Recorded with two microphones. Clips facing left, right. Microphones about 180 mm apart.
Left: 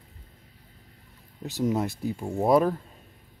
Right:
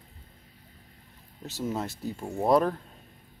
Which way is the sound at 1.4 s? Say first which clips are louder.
Left 6 dB; 15° left (ahead or behind).